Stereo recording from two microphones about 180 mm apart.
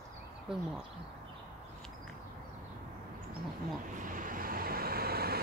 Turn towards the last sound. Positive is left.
turn(degrees=-60)  # may be behind; listen again after turning